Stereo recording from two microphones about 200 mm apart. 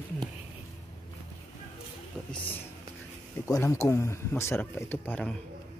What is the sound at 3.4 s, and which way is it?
Speech, 15° left (ahead or behind).